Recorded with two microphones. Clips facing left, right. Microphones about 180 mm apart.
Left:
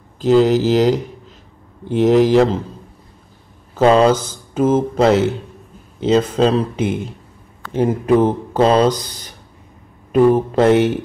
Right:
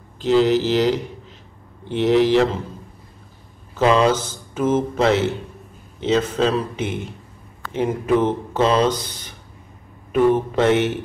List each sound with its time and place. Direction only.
0.2 s speech: 40° left (ahead or behind)
3.7 s speech: 40° left (ahead or behind)